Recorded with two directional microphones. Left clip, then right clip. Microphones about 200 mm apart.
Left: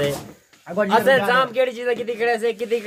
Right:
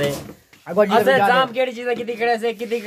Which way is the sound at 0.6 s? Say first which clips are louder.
Right 5 dB; 60° right (ahead or behind).